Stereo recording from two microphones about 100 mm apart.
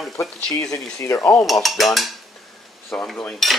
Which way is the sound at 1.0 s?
30° left (ahead or behind).